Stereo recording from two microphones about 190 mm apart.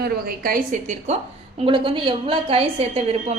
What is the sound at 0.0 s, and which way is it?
A woman's voice, 50° right (ahead or behind).